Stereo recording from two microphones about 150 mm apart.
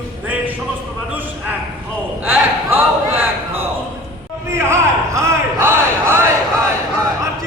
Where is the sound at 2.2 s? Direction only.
15° right (ahead or behind).